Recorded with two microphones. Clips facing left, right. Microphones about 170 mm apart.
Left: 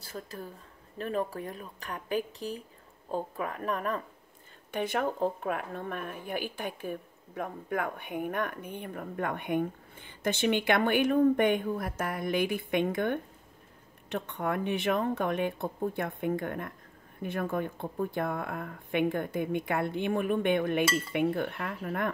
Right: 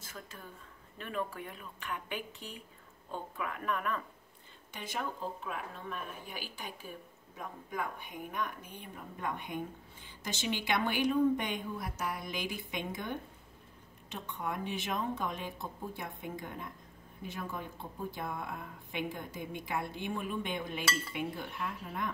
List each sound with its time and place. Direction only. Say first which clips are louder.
0.0 s speech: left 8 dB; 35° left (ahead or behind)
4.6 s speech: left 9 dB; 60° left (ahead or behind)